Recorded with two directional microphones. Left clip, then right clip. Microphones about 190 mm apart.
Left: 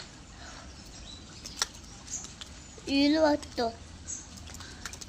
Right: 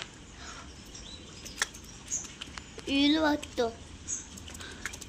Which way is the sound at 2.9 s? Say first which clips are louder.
Left 2 dB; 25° left (ahead or behind).